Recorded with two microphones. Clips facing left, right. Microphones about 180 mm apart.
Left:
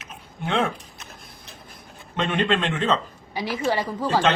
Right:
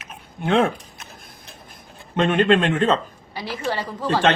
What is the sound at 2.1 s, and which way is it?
Speech, 50° right (ahead or behind).